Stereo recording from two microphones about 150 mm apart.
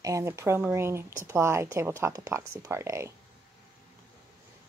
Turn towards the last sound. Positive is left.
turn(degrees=-20)  # may be behind; listen again after turning